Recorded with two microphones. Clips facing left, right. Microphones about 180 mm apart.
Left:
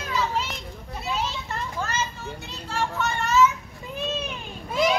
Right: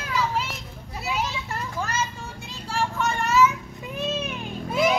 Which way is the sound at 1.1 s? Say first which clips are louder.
Right 1 dB; 10° right (ahead or behind).